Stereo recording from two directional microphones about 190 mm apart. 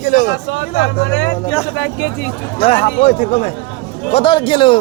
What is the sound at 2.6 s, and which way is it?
A man's voice, 30° left (ahead or behind).